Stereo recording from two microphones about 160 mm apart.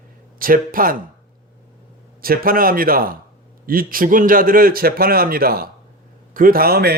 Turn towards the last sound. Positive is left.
turn(degrees=-75)  # may be behind; listen again after turning